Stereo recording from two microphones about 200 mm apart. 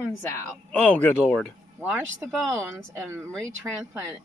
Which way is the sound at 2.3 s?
10° right (ahead or behind).